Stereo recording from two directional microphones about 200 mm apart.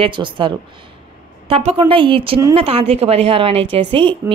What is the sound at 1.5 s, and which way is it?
A woman's voice, 30° right (ahead or behind).